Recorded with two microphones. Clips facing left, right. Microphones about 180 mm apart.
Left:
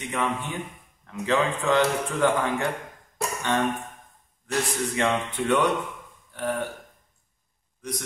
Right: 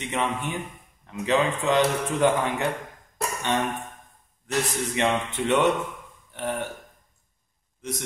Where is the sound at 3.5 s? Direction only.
20° right (ahead or behind).